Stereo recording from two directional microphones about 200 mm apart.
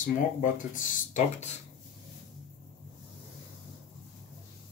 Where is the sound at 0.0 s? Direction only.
40° left (ahead or behind).